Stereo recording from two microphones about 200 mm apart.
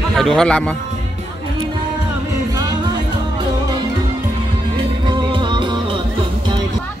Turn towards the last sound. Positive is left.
turn(degrees=-25)  # may be behind; listen again after turning